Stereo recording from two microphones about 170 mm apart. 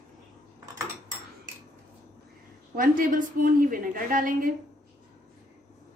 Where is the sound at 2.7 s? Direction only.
55° right (ahead or behind).